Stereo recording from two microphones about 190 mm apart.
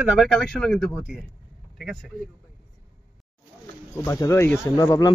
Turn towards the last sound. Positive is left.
turn(degrees=15)  # may be behind; listen again after turning